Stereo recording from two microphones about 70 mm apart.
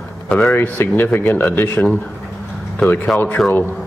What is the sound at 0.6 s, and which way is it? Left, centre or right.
Speech, left.